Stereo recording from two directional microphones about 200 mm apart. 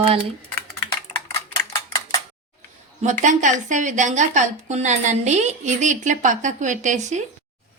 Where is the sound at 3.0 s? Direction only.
40° right (ahead or behind).